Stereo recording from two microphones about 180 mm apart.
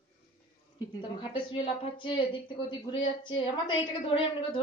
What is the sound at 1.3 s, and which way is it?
Speech, 25° left (ahead or behind).